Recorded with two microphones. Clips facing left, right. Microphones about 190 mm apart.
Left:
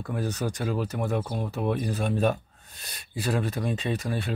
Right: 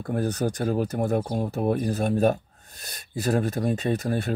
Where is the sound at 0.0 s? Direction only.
50° right (ahead or behind).